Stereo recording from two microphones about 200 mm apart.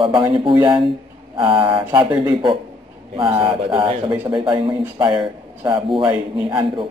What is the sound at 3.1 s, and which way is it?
Speech, 25° right (ahead or behind).